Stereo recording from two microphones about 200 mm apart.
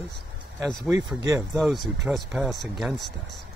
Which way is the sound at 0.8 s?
15° right (ahead or behind).